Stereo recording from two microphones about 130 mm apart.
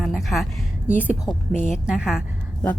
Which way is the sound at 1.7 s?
5° right (ahead or behind).